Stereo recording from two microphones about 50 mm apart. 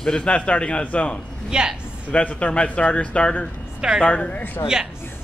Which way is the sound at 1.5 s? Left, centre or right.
Centre.